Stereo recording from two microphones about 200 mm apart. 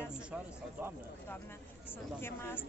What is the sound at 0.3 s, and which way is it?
Speech, 10° right (ahead or behind).